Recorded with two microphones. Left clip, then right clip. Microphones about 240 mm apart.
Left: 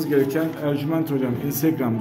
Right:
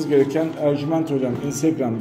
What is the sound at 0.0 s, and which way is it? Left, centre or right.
A man's voice, centre.